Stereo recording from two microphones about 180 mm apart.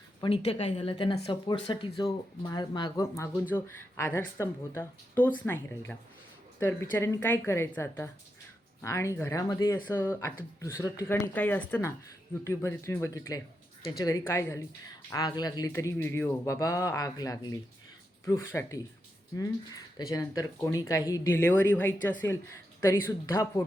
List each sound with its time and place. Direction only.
0.4 s speech: 35° left (ahead or behind); by 18.8 s 15° left (ahead or behind)
20.0 s speech: 20° left (ahead or behind)